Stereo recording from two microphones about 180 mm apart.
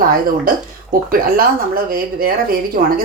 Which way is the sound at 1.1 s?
55° right (ahead or behind).